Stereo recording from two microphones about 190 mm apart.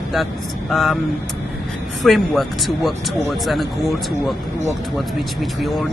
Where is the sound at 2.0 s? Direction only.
Centre (ahead or behind).